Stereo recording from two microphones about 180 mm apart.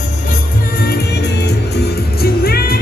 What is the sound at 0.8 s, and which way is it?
Music, 60° left (ahead or behind).